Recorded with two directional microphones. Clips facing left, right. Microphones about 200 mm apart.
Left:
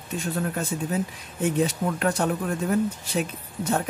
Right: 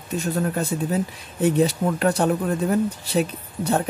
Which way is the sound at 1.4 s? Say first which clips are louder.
Right 4 dB; 35° right (ahead or behind).